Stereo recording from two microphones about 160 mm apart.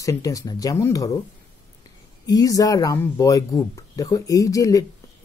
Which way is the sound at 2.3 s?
20° left (ahead or behind).